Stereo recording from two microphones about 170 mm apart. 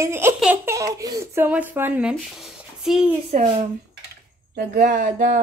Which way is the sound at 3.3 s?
45° right (ahead or behind).